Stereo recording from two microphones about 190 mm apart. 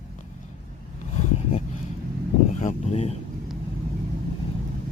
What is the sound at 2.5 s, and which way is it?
Vehicle, 40° left (ahead or behind).